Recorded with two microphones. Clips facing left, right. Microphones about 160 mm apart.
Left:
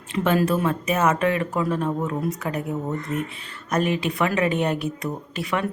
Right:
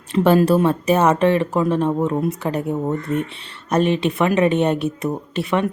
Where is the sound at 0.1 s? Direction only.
35° right (ahead or behind).